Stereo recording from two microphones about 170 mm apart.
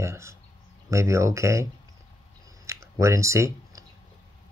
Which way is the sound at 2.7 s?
15° right (ahead or behind).